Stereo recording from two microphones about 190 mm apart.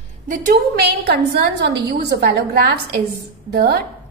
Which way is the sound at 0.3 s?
55° right (ahead or behind).